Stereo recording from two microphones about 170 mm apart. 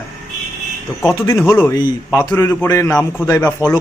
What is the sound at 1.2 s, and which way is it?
A man's voice, 15° left (ahead or behind).